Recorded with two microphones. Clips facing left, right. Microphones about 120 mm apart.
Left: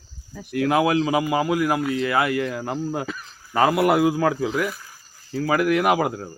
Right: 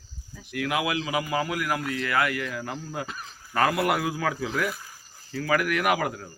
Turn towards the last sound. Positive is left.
turn(degrees=25)  # may be behind; listen again after turning